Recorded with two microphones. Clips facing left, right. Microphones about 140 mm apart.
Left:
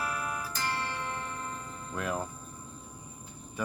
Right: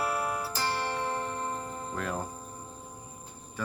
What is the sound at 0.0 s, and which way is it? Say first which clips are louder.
Music: right 4 dB; 30° right (ahead or behind).